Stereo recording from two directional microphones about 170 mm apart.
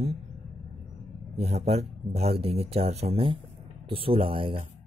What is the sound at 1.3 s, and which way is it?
Speech, 40° right (ahead or behind).